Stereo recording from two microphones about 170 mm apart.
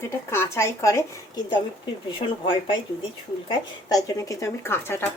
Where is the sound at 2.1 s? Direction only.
30° left (ahead or behind).